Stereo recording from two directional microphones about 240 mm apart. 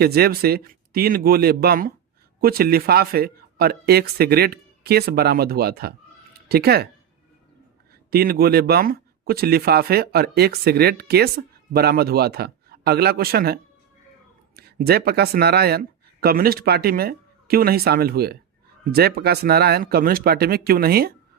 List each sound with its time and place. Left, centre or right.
0.0 s speech: right
8.1 s speech: right